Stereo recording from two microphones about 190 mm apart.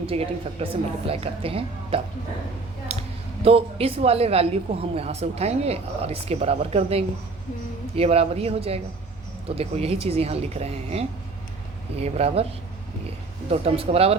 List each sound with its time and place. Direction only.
0.0 s speech: 30° right (ahead or behind)
2.9 s a sound: 30° right (ahead or behind)
3.4 s a woman's voice: 30° right (ahead or behind)
13.5 s a woman's voice: 30° right (ahead or behind)